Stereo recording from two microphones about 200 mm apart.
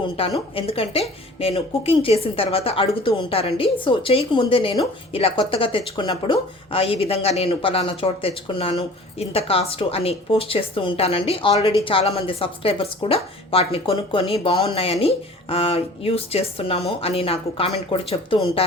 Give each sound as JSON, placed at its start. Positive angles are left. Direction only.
{"t": 0.2, "sound": "speech", "side_deg": 25}